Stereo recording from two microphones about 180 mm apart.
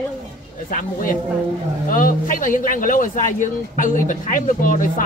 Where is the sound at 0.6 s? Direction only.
50° left (ahead or behind).